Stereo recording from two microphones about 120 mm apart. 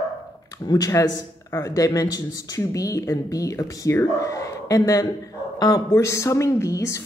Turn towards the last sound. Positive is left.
turn(degrees=25)  # may be behind; listen again after turning